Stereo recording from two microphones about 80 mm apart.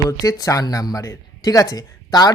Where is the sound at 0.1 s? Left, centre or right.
Left.